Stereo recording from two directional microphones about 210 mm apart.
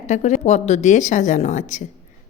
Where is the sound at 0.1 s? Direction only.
35° left (ahead or behind).